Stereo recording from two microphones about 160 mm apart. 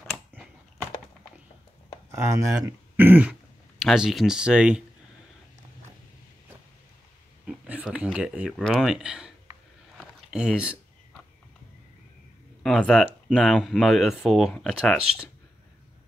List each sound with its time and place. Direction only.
2.0 s speech: 20° right (ahead or behind)
7.4 s speech: 5° right (ahead or behind)
9.9 s a sound: 5° right (ahead or behind)
12.6 s speech: 5° left (ahead or behind)